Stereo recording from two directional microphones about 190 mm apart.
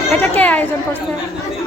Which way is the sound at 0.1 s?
10° left (ahead or behind).